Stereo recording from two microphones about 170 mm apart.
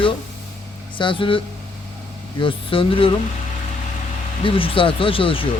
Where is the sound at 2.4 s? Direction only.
30° left (ahead or behind).